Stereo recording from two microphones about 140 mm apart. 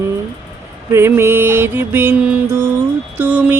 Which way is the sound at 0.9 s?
15° right (ahead or behind).